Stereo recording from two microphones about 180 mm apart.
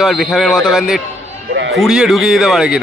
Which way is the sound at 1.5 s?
75° right (ahead or behind).